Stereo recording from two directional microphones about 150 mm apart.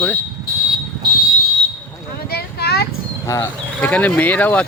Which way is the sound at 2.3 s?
90° left.